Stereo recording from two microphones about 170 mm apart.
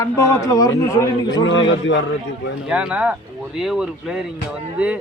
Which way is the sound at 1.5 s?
90° left.